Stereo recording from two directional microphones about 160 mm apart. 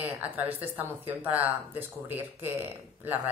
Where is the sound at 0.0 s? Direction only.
10° right (ahead or behind).